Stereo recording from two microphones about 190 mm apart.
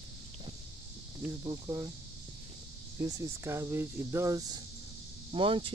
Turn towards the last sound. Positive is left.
turn(degrees=-25)  # may be behind; listen again after turning